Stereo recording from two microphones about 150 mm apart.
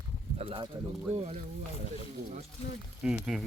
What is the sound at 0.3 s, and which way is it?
Speech, 35° right (ahead or behind).